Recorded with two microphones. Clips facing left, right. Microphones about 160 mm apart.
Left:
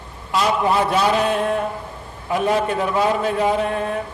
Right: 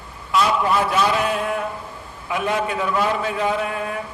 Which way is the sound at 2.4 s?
35° left (ahead or behind).